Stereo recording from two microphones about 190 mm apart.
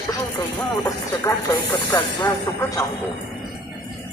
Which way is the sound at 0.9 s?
15° left (ahead or behind).